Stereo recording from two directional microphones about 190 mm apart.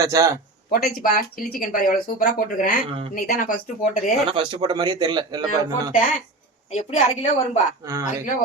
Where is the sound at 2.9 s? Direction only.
30° right (ahead or behind).